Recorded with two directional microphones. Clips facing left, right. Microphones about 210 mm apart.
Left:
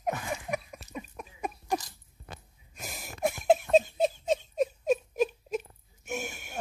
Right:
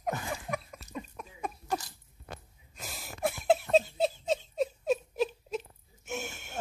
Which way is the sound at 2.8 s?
15° left (ahead or behind).